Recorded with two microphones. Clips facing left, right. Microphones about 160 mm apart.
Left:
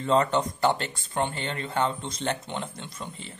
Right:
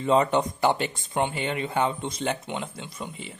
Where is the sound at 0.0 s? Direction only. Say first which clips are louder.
Right 2 dB; 15° right (ahead or behind).